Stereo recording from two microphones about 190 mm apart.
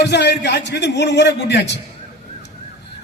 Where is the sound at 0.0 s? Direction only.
65° left (ahead or behind).